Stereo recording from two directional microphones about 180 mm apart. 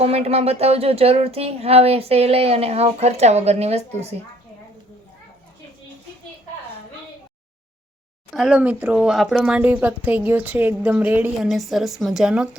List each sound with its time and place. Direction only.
0.0 s speech: 35° right (ahead or behind)
8.3 s a woman's voice: centre (ahead or behind)